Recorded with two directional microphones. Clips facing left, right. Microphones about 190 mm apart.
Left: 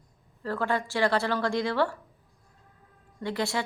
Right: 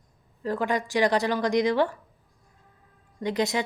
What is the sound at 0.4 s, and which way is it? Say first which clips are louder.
Speech: right 2 dB; 15° right (ahead or behind).